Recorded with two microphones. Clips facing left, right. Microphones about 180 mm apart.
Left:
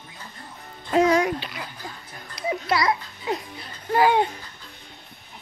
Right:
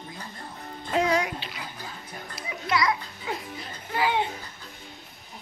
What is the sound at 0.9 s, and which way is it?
Music, 45° left (ahead or behind).